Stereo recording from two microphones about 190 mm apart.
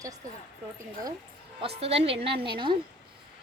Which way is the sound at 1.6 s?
30° right (ahead or behind).